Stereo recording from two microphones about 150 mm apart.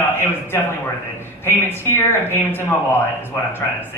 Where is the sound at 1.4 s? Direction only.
15° left (ahead or behind).